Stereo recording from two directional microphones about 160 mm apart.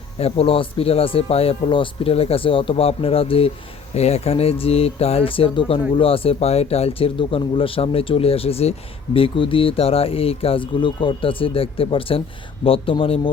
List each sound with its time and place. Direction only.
0.2 s speech: 40° left (ahead or behind)